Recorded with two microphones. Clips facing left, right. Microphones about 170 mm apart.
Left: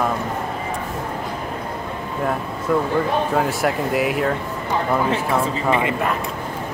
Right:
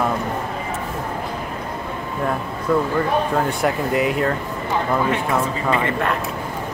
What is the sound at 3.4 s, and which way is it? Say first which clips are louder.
Speech: even; centre (ahead or behind).